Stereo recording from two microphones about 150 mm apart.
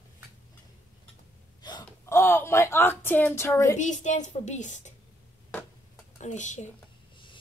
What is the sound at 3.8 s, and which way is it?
A woman's voice, 55° left (ahead or behind).